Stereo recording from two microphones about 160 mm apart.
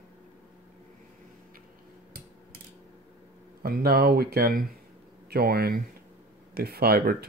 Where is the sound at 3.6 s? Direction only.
70° right (ahead or behind).